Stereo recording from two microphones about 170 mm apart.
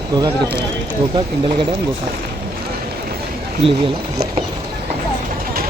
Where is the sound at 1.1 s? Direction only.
30° right (ahead or behind).